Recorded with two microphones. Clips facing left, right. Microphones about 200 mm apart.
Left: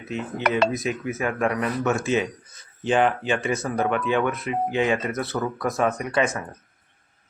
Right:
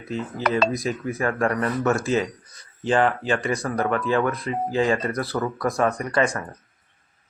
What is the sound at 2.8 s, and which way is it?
Speech, 20° left (ahead or behind).